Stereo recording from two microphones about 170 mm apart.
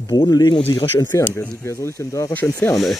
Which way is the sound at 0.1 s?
25° left (ahead or behind).